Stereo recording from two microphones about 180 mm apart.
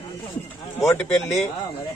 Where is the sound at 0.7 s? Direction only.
15° left (ahead or behind).